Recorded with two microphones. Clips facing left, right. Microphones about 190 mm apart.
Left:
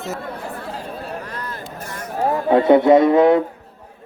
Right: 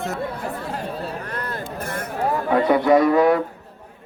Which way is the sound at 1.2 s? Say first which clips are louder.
Right 2 dB; 55° right (ahead or behind).